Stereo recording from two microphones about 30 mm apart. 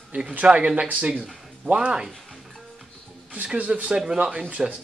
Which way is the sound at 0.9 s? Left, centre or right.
Right.